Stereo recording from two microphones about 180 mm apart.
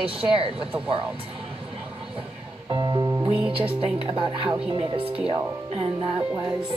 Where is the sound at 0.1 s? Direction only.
30° right (ahead or behind).